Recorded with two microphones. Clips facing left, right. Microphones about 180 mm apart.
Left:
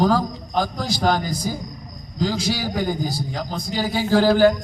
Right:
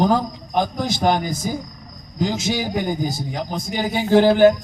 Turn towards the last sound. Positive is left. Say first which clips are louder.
# right 3 dB
turn(degrees=-20)  # may be behind; listen again after turning